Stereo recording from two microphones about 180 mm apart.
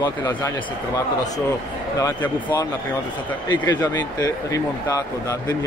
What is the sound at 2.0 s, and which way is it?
Speech, 20° left (ahead or behind).